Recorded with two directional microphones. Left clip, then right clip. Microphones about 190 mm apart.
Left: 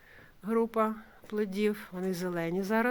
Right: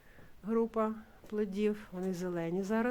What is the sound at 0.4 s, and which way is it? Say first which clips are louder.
Speech: left 4 dB; 15° left (ahead or behind).